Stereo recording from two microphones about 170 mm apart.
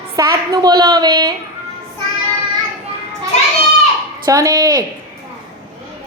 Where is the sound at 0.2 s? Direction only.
20° right (ahead or behind).